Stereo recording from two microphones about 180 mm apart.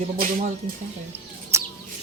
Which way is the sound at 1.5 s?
15° right (ahead or behind).